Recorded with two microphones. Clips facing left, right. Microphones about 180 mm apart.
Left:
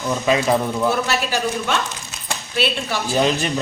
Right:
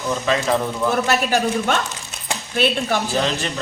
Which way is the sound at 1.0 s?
50° right (ahead or behind).